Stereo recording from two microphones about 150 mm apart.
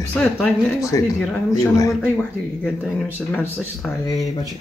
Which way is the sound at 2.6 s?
10° left (ahead or behind).